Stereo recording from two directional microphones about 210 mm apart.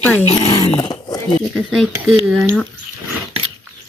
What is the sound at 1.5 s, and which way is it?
Speech, centre (ahead or behind).